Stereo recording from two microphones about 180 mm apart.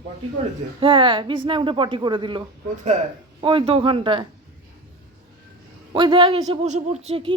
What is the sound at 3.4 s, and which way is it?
Speech, 30° right (ahead or behind).